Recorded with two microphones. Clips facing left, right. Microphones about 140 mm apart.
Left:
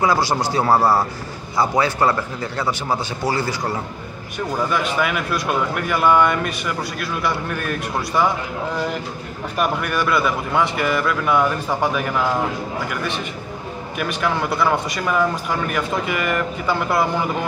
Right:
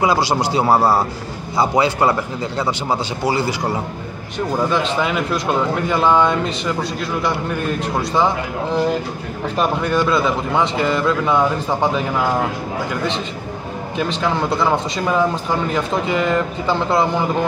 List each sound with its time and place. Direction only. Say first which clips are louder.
0.0 s speech: right 2 dB; 15° right (ahead or behind)
9.6 s speech: right 3 dB; 20° right (ahead or behind)